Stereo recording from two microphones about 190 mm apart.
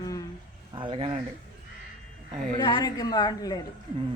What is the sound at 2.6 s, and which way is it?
A woman's voice, 25° left (ahead or behind).